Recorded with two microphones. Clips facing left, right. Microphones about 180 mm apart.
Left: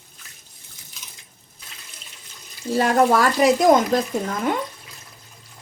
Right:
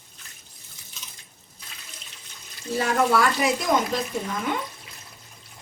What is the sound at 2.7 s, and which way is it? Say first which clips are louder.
Speech: left 4 dB; 40° left (ahead or behind).